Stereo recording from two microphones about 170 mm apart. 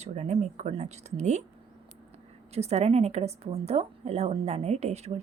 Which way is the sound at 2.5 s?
40° right (ahead or behind).